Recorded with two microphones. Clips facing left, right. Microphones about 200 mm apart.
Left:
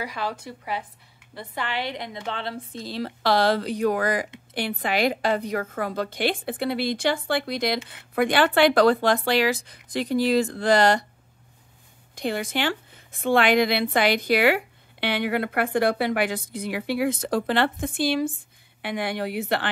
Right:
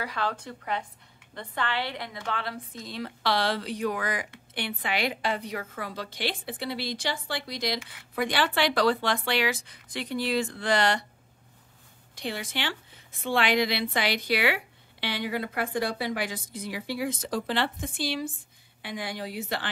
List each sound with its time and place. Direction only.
0.0 s a woman's voice: 10° left (ahead or behind); by 11.1 s 40° left (ahead or behind)
12.2 s a woman's voice: 45° left (ahead or behind)
18.8 s speech: 65° left (ahead or behind)